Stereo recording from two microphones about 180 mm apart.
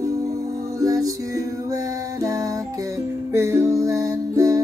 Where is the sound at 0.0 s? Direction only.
20° right (ahead or behind).